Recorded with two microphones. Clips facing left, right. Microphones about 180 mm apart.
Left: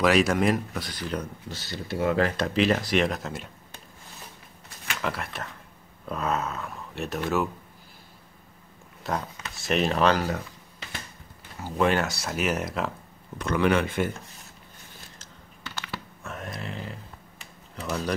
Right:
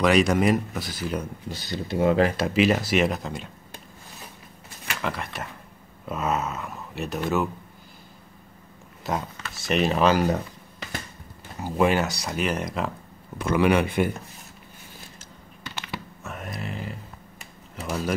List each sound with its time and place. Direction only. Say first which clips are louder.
0.0 s speech: right 2 dB; centre (ahead or behind); by 2.3 s 20° right (ahead or behind)
2.3 s speech: right 2 dB; 5° right (ahead or behind)
4.8 s speech: right 1 dB; centre (ahead or behind)
9.0 s speech: right 2 dB; centre (ahead or behind)
11.6 s speech: right 2 dB; 10° right (ahead or behind)
13.4 s speech: right 3 dB; 10° right (ahead or behind)
15.1 s computer keyboard: right 3 dB; 15° right (ahead or behind)
16.3 s a sound: right 1 dB; centre (ahead or behind)
17.7 s speech: right 1 dB; 5° right (ahead or behind)